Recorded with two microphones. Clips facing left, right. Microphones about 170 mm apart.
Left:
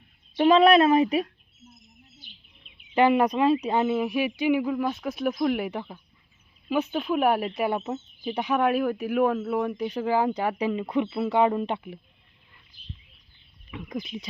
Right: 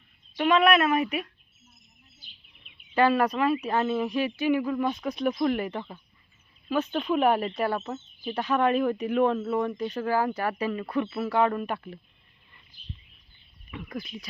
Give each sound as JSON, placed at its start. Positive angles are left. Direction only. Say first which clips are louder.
{"t": 0.3, "sound": "speech", "louder": "left 4 dB", "side_deg": 30}
{"t": 2.9, "sound": "speech", "louder": "left 2 dB", "side_deg": 20}
{"t": 13.7, "sound": "speech", "louder": "left 3 dB", "side_deg": 10}